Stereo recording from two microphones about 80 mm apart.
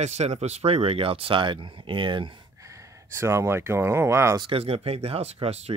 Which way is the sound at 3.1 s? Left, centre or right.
Right.